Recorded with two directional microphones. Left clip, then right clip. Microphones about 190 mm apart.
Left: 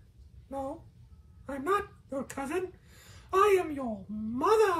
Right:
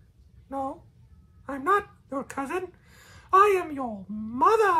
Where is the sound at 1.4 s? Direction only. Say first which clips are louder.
Right 6 dB; 30° right (ahead or behind).